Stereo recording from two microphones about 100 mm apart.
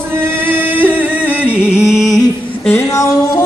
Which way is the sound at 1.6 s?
10° right (ahead or behind).